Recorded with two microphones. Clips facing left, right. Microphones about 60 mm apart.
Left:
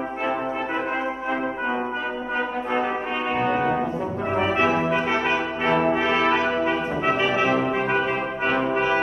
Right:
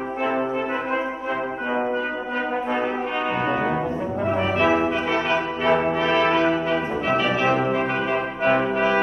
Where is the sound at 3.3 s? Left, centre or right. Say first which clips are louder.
Left 3 dB; centre.